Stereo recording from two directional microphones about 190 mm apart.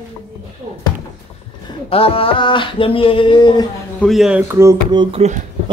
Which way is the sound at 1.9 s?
30° left (ahead or behind).